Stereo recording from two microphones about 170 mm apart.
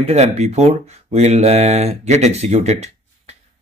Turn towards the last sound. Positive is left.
turn(degrees=-40)  # may be behind; listen again after turning